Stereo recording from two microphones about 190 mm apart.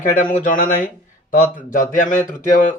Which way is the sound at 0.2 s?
45° left (ahead or behind).